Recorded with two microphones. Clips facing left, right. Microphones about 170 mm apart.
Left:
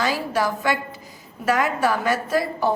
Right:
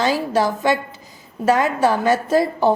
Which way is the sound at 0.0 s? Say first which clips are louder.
Right 4 dB; 25° right (ahead or behind).